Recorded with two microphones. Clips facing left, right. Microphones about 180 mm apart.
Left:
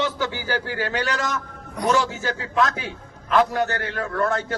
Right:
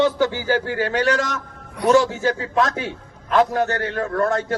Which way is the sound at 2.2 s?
35° right (ahead or behind).